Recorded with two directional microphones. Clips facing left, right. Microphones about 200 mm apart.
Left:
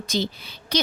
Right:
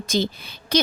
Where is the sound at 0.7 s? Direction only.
50° right (ahead or behind).